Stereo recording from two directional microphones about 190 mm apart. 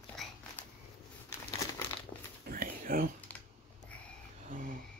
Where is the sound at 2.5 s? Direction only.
50° right (ahead or behind).